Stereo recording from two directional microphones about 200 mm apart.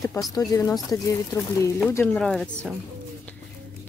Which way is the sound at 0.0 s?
20° left (ahead or behind).